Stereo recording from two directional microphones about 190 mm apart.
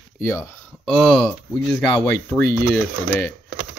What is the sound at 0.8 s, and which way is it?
Speech, centre (ahead or behind).